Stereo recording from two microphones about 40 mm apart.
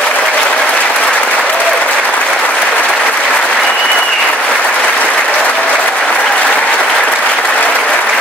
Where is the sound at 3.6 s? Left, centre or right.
Left.